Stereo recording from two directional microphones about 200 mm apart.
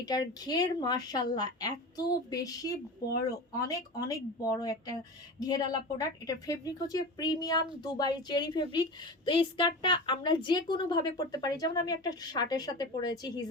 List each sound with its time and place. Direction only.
0.0 s a woman's voice: 20° left (ahead or behind)